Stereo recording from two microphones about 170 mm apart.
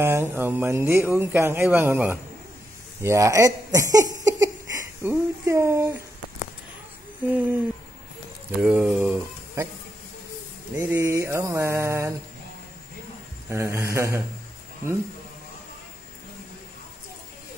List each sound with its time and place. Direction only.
0.0 s speech: 15° right (ahead or behind)
7.2 s speech: 10° right (ahead or behind)
10.8 s speech: 15° right (ahead or behind)
13.5 s speech: 15° right (ahead or behind)